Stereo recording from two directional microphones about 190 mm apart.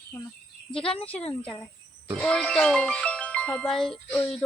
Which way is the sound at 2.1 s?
5° left (ahead or behind).